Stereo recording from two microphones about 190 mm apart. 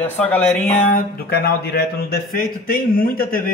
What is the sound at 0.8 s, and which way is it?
Speech, 50° left (ahead or behind).